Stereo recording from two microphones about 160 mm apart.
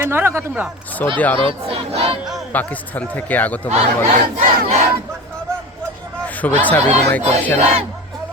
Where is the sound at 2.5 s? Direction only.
10° left (ahead or behind).